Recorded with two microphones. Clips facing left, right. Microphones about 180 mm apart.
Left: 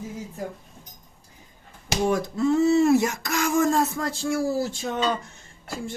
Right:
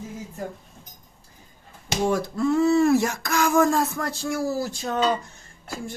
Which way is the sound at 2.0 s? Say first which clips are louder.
Even; 20° left (ahead or behind).